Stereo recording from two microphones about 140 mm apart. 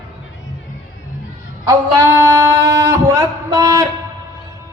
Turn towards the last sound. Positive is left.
turn(degrees=-20)  # may be behind; listen again after turning